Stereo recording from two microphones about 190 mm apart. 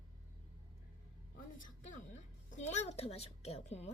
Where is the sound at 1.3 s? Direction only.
45° left (ahead or behind).